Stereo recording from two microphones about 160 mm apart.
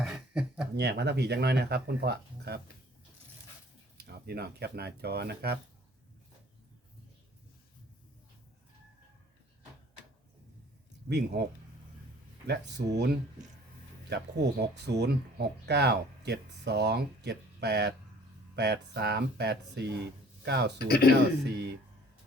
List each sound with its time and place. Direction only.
0.0 s a sound: 5° right (ahead or behind)
0.8 s speech: 90° right
3.9 s speech: 85° right
11.1 s speech: 85° right
12.5 s speech: 90° right
20.7 s speech: 80° left
21.4 s speech: 90° right